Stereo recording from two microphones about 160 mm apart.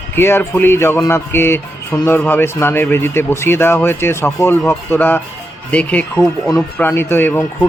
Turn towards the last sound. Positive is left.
turn(degrees=10)  # may be behind; listen again after turning